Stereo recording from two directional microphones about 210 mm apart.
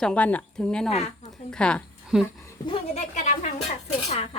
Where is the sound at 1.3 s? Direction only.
5° left (ahead or behind).